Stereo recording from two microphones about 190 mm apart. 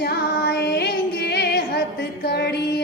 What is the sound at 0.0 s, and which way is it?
Music, 60° left (ahead or behind).